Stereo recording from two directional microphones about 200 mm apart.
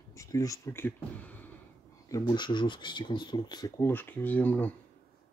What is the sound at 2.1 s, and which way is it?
Speech, 20° left (ahead or behind).